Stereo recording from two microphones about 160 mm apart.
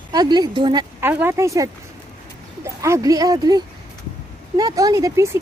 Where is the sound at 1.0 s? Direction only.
15° right (ahead or behind).